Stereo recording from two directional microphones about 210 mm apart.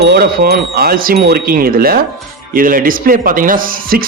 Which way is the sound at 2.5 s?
40° right (ahead or behind).